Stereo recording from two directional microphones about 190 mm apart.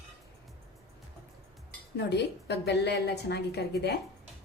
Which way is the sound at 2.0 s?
65° left (ahead or behind).